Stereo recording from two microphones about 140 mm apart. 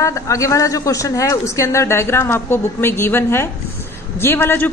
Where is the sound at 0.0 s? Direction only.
20° left (ahead or behind).